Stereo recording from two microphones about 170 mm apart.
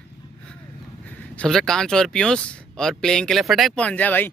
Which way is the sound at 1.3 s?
5° left (ahead or behind).